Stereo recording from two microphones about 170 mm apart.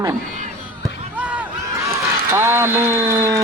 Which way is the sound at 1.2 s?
10° right (ahead or behind).